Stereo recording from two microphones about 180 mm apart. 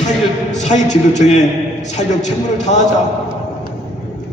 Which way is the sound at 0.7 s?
40° left (ahead or behind).